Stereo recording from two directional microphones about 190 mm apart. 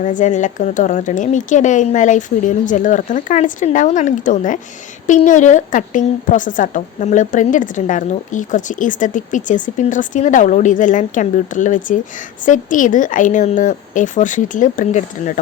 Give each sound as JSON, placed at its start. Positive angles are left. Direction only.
{"t": 0.0, "sound": "a woman's voice", "side_deg": 40}